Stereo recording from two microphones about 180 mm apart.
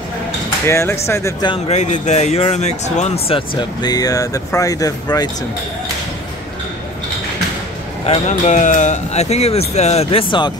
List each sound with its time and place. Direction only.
0.7 s speech: 15° left (ahead or behind)
1.5 s speech: 40° left (ahead or behind); by 5.3 s 20° left (ahead or behind)
8.0 s speech: 40° left (ahead or behind)